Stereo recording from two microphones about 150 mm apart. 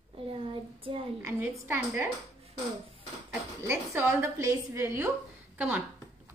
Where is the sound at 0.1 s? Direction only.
35° right (ahead or behind).